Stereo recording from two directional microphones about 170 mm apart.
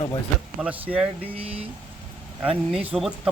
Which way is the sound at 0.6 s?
10° right (ahead or behind).